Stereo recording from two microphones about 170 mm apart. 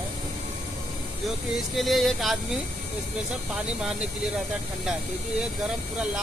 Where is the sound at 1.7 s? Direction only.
Centre (ahead or behind).